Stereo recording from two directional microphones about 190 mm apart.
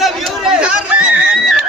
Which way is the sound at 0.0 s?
5° right (ahead or behind).